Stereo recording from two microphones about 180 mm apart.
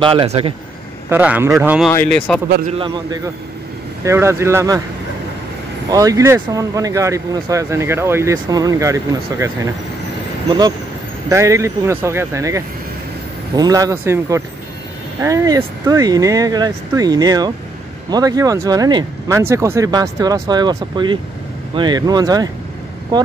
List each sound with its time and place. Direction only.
0.0 s speech: 30° right (ahead or behind)
1.1 s speech: 10° right (ahead or behind)
1.9 s speech: 5° left (ahead or behind)
2.8 s speech: 25° right (ahead or behind)
5.9 s speech: 20° right (ahead or behind)
11.2 s speech: 15° right (ahead or behind)